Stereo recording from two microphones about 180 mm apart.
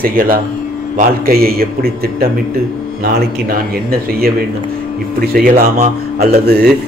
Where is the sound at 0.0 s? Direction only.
50° right (ahead or behind).